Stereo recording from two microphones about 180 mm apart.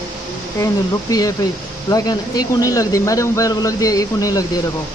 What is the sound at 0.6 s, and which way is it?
Speech, 20° left (ahead or behind).